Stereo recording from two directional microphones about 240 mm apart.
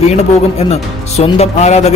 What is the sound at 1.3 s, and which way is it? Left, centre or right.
Speech, left.